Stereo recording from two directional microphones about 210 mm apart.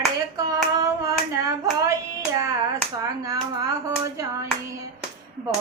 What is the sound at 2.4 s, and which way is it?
Hands, 15° right (ahead or behind).